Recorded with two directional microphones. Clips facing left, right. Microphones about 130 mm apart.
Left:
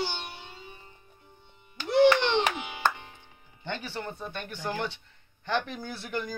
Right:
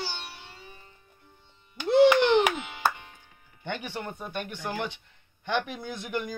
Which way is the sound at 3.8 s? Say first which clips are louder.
Even; 15° right (ahead or behind).